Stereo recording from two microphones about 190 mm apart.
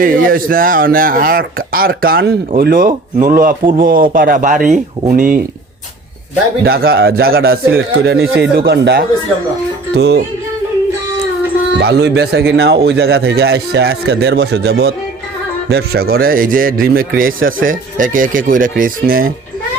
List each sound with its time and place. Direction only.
0.0 s a man's voice: 45° right (ahead or behind)
6.7 s a man's voice: 55° right (ahead or behind)
11.8 s a man's voice: 60° right (ahead or behind)